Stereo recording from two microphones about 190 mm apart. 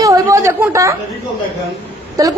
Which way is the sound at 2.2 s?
20° right (ahead or behind).